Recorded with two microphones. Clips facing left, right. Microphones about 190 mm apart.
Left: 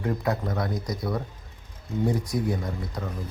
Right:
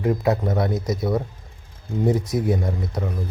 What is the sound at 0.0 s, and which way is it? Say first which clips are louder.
Speech: right 6 dB; 20° right (ahead or behind).